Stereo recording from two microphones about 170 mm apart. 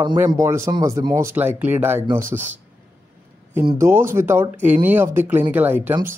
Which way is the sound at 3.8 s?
15° right (ahead or behind).